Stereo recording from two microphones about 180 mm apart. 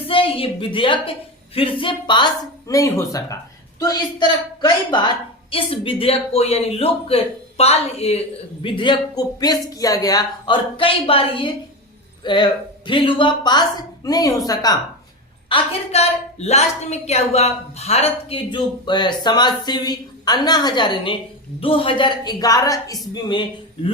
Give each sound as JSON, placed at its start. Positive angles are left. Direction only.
{"t": 0.1, "sound": "a woman's voice", "side_deg": 30}
{"t": 15.4, "sound": "a woman's voice", "side_deg": 30}